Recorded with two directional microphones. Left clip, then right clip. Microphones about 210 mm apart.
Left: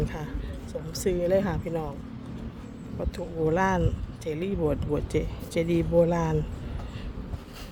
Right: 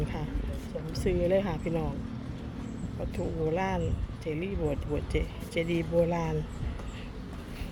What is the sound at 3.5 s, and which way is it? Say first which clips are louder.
Speech: left 7 dB; 90° left.